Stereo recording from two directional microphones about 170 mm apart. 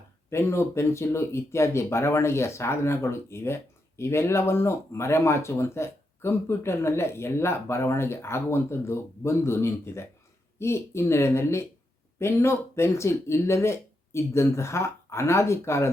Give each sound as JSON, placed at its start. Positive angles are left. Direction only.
{"t": 0.3, "sound": "speech", "side_deg": 15}